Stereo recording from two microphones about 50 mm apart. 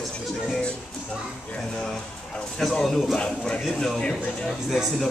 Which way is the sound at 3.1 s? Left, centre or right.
Left.